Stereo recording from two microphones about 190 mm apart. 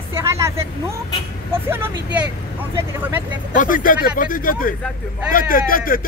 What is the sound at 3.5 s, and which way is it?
Speech, 45° left (ahead or behind).